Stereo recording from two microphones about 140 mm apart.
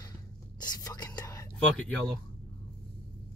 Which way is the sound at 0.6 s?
30° left (ahead or behind).